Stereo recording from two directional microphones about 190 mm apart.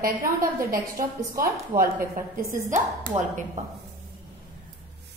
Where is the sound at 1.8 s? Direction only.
45° right (ahead or behind).